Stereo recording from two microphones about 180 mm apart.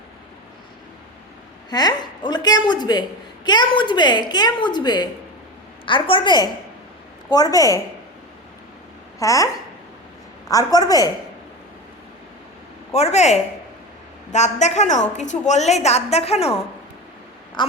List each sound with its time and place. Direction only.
1.7 s a woman's voice: 20° left (ahead or behind)
9.1 s speech: 20° left (ahead or behind)
10.5 s a woman's voice: 20° left (ahead or behind)
12.9 s a woman's voice: 35° left (ahead or behind)
17.6 s a woman's voice: 25° left (ahead or behind)